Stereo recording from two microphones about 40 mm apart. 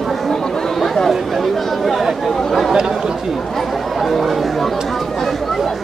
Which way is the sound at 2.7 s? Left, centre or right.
Centre.